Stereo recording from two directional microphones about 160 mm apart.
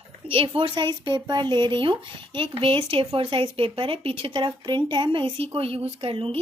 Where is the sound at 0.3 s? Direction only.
35° right (ahead or behind).